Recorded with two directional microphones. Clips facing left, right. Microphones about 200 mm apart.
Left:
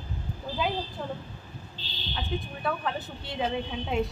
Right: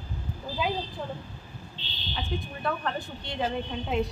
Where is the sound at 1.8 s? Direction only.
35° left (ahead or behind).